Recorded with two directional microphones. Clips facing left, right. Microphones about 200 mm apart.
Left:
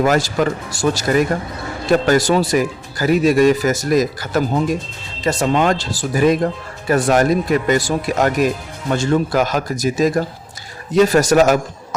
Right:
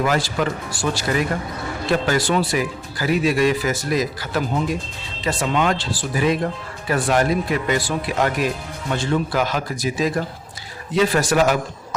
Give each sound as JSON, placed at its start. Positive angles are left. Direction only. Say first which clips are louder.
{"t": 0.0, "sound": "speech", "louder": "left 5 dB", "side_deg": 45}